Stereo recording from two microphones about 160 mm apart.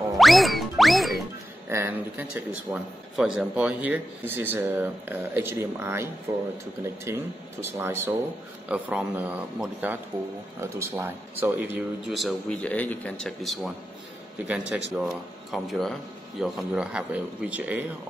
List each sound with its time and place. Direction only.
0.2 s music: centre (ahead or behind)
1.7 s a man's voice: 15° right (ahead or behind)
12.1 s speech: centre (ahead or behind)
14.9 s speech: centre (ahead or behind)